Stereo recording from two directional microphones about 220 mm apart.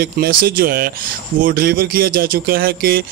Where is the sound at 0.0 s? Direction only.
45° right (ahead or behind).